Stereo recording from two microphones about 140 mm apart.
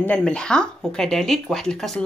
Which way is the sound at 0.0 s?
10° left (ahead or behind).